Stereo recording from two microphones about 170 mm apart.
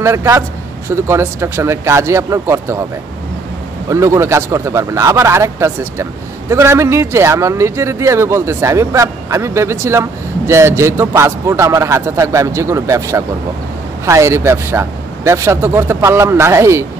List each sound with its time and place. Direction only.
0.0 s speech: 15° right (ahead or behind)
3.9 s speech: 15° right (ahead or behind)